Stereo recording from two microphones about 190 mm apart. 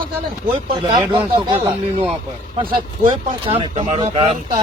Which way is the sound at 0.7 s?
20° right (ahead or behind).